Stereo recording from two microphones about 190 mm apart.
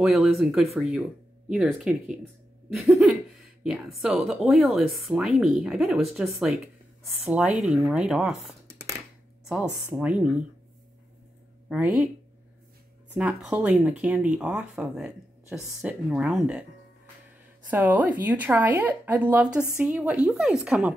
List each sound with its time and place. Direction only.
0.0 s speech: centre (ahead or behind)
9.5 s speech: 5° right (ahead or behind)
11.7 s speech: 5° right (ahead or behind)
13.1 s speech: 10° right (ahead or behind)
17.6 s speech: 10° right (ahead or behind)